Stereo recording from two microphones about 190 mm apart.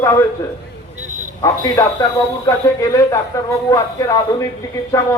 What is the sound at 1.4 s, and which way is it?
A man's voice, 20° left (ahead or behind).